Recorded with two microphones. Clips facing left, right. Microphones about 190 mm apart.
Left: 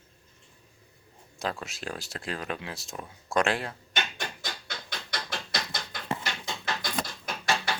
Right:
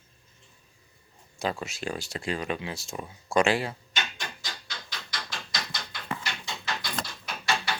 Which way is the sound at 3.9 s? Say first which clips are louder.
Left 2 dB; 55° left (ahead or behind).